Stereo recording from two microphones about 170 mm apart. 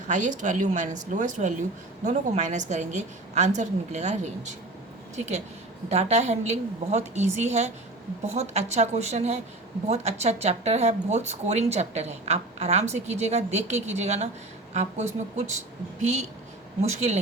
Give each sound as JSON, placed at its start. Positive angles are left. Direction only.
{"t": 0.1, "sound": "a woman's voice", "side_deg": -45}